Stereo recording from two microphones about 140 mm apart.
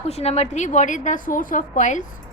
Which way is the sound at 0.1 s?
50° left (ahead or behind).